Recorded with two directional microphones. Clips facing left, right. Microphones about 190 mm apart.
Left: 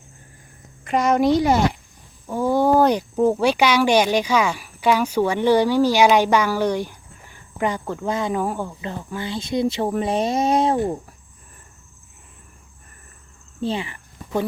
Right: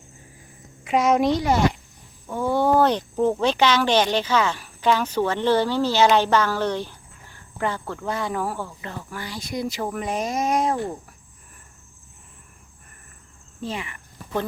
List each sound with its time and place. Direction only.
0.9 s a woman's voice: centre (ahead or behind); by 10.9 s 25° left (ahead or behind)
13.6 s speech: 30° left (ahead or behind)